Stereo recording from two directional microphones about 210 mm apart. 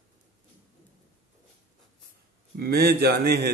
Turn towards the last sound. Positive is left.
turn(degrees=-50)  # may be behind; listen again after turning